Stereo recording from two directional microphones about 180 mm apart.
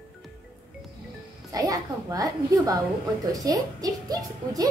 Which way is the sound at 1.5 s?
20° right (ahead or behind).